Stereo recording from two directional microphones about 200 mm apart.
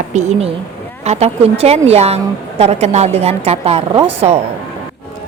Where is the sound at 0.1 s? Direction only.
35° right (ahead or behind).